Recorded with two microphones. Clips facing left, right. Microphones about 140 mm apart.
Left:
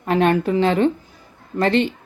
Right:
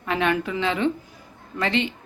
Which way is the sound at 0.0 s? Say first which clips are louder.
Left 6 dB; 40° left (ahead or behind).